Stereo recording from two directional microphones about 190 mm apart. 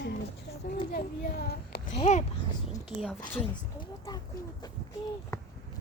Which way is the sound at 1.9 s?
35° left (ahead or behind).